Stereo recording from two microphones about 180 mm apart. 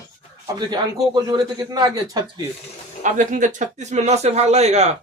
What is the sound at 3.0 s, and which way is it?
Speech, 45° right (ahead or behind).